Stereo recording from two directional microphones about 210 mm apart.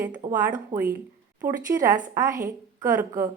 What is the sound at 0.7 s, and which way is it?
Speech, 35° right (ahead or behind).